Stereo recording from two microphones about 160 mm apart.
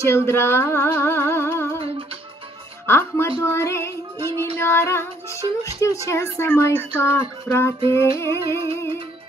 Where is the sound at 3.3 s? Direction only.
20° left (ahead or behind).